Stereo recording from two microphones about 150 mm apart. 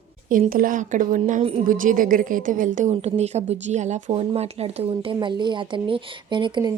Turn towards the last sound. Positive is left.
turn(degrees=-30)  # may be behind; listen again after turning